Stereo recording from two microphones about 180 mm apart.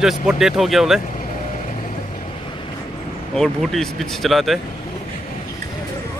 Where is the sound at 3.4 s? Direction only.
Centre (ahead or behind).